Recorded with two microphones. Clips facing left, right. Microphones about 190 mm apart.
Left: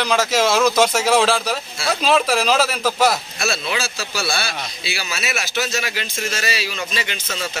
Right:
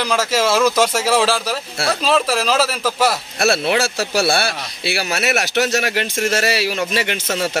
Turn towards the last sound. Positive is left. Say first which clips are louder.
# right 7 dB
turn(degrees=-60)  # may be behind; listen again after turning